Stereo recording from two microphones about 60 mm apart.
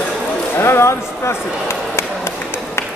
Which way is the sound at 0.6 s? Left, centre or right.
Left.